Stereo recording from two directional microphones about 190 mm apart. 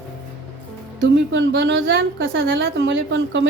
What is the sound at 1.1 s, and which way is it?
A woman's voice, 75° right (ahead or behind).